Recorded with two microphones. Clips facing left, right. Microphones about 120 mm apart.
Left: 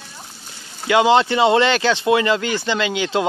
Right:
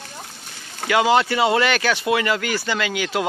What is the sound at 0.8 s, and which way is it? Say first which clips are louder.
Speech: left 3 dB; 25° left (ahead or behind).